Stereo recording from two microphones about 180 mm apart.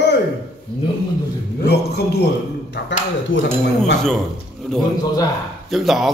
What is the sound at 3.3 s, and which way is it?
Speech, 90° left.